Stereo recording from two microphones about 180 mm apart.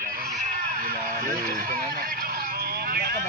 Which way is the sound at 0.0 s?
50° right (ahead or behind).